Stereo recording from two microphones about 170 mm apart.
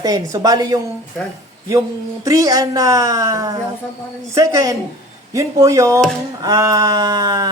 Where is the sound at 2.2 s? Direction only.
20° right (ahead or behind).